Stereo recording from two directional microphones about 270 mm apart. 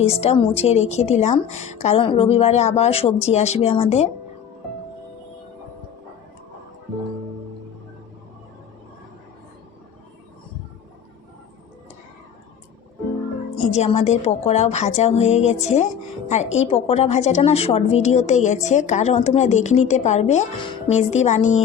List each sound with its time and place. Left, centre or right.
0.0 s a woman's voice: left
13.7 s a woman's voice: left